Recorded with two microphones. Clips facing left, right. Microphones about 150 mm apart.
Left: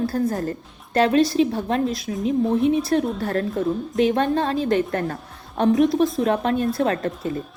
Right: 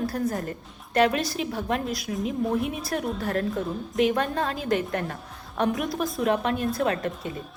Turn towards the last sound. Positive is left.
turn(degrees=0)  # may be behind; listen again after turning